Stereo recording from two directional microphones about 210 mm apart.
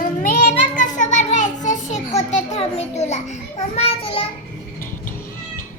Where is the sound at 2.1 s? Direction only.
30° left (ahead or behind).